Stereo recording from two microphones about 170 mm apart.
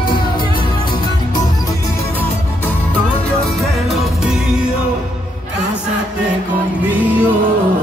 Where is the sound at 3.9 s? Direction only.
Centre (ahead or behind).